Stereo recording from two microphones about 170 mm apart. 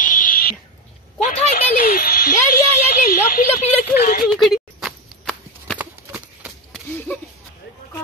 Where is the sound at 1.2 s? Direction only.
40° left (ahead or behind); by 3.6 s 60° left (ahead or behind).